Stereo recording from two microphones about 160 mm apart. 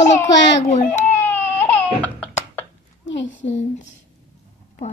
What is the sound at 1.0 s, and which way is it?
Baby cry, 15° left (ahead or behind).